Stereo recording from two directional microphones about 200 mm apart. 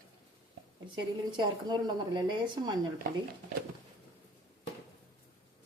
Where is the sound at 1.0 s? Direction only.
20° right (ahead or behind).